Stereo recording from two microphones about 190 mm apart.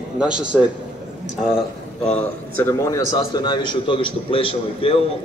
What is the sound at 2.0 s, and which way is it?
A man's voice, 10° left (ahead or behind).